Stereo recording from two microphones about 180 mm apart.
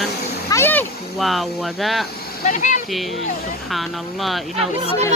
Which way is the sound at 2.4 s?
45° left (ahead or behind).